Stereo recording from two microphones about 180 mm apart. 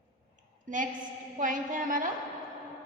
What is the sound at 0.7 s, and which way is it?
A woman's voice, 45° right (ahead or behind).